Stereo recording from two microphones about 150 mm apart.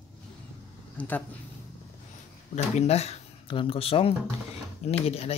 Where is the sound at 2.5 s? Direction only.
45° left (ahead or behind).